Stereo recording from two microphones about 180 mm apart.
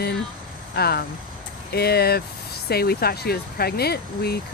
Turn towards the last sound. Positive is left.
turn(degrees=60)  # may be behind; listen again after turning